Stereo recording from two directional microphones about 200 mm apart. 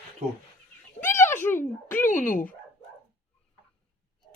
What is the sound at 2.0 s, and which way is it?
Speech, 40° left (ahead or behind).